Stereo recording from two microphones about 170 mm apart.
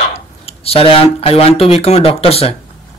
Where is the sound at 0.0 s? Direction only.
40° left (ahead or behind).